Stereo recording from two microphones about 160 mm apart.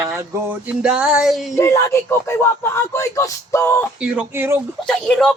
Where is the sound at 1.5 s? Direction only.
15° left (ahead or behind).